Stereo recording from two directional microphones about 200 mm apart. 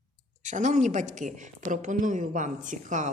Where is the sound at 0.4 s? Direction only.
40° right (ahead or behind).